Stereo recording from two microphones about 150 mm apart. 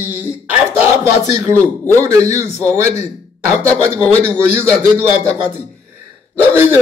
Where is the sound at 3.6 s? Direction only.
15° right (ahead or behind).